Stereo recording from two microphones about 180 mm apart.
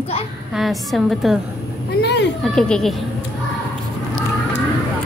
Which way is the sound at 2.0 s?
70° left (ahead or behind).